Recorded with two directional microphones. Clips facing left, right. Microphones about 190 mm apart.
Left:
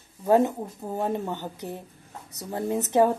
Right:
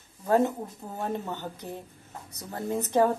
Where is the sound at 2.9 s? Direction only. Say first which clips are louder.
Left 2 dB; 15° left (ahead or behind).